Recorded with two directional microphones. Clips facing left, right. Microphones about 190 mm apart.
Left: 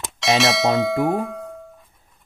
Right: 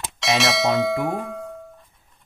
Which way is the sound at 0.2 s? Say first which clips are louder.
Left 2 dB; centre (ahead or behind).